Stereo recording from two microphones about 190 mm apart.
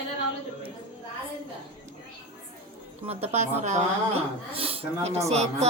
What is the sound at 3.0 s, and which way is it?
A woman's voice, 35° right (ahead or behind).